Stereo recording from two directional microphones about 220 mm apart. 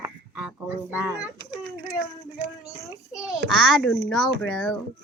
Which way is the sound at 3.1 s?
5° right (ahead or behind).